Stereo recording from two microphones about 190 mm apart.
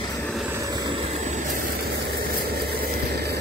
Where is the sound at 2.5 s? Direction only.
55° right (ahead or behind).